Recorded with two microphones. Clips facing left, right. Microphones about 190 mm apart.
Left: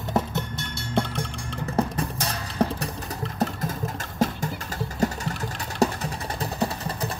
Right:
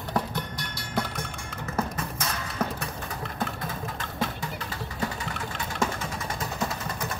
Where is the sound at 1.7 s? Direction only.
35° left (ahead or behind).